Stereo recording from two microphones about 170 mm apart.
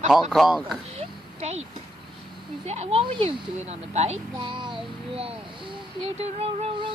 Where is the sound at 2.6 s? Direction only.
40° right (ahead or behind).